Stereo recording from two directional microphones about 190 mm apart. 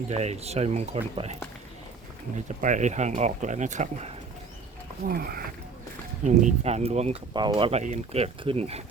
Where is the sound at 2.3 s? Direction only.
40° right (ahead or behind).